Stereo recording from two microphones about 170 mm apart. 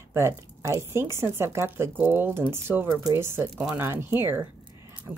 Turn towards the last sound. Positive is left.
turn(degrees=-10)  # may be behind; listen again after turning